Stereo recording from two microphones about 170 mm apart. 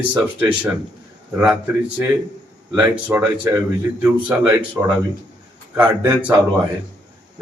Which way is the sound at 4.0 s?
10° right (ahead or behind).